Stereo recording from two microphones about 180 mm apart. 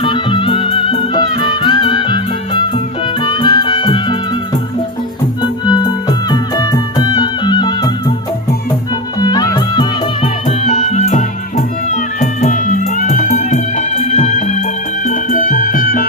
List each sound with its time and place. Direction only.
0.0 s music: 25° left (ahead or behind)
5.4 s music: 25° left (ahead or behind)
9.1 s music: 20° left (ahead or behind)
10.6 s music: 40° left (ahead or behind)